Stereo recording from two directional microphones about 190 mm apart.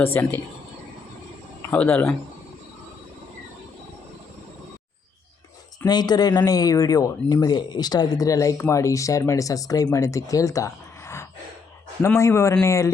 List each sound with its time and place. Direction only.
0.0 s speech: 10° left (ahead or behind)
1.7 s speech: 10° left (ahead or behind)
5.8 s speech: 20° left (ahead or behind)